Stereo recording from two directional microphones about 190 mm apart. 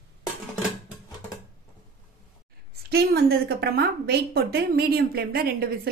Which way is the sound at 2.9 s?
55° right (ahead or behind).